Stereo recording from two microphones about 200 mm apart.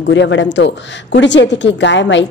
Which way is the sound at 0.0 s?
65° left (ahead or behind).